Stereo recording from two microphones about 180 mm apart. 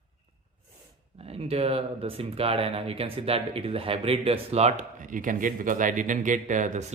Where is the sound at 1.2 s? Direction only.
35° right (ahead or behind).